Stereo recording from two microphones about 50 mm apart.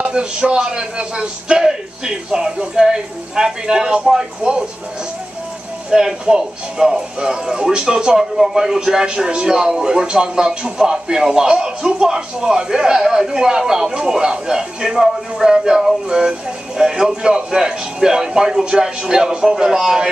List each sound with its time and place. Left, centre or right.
0.0 s a man's voice: centre
5.9 s a man's voice: centre